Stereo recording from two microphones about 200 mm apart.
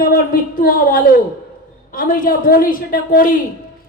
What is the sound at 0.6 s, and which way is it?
A woman's voice, 45° left (ahead or behind).